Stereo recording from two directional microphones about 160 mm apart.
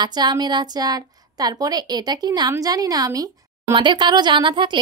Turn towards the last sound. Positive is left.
turn(degrees=-30)  # may be behind; listen again after turning